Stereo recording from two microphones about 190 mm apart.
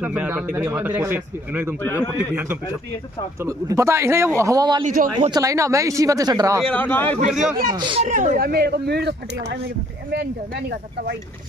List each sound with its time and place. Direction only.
0.0 s a man's voice: 5° right (ahead or behind)
4.8 s a man's voice: 40° right (ahead or behind)
5.3 s speech: 15° right (ahead or behind)
6.6 s a man's voice: 10° left (ahead or behind)
7.7 s a man's voice: 25° right (ahead or behind)
8.0 s speech: 40° right (ahead or behind); by 11.1 s 60° right (ahead or behind)